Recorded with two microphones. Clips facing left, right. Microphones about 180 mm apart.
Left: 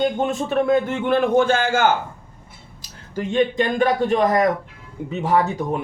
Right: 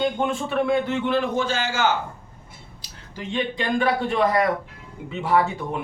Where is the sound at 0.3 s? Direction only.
40° left (ahead or behind).